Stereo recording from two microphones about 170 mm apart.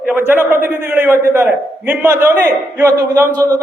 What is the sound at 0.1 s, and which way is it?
A man's voice, 15° right (ahead or behind).